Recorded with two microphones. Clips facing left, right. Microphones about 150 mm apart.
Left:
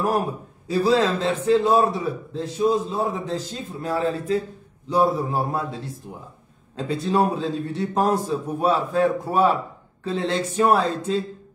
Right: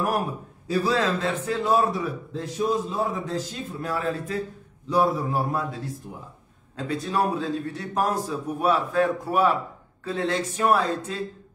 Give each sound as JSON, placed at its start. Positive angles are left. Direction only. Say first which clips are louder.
{"t": 0.7, "sound": "a man's voice", "louder": "left 4 dB", "side_deg": 25}
{"t": 6.8, "sound": "a man's voice", "louder": "left 4 dB", "side_deg": 25}